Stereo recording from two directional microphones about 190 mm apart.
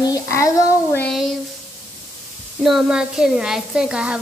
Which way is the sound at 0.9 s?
Centre (ahead or behind).